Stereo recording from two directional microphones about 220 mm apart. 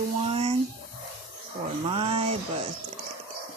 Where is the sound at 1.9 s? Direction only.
25° right (ahead or behind).